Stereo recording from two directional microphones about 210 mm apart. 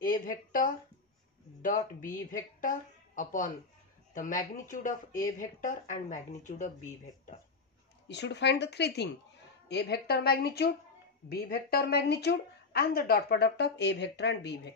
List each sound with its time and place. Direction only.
0.0 s a woman's voice: 40° left (ahead or behind)
8.1 s speech: 55° left (ahead or behind)